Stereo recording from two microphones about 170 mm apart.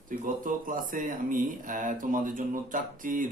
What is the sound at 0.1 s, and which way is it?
Speech, 50° right (ahead or behind).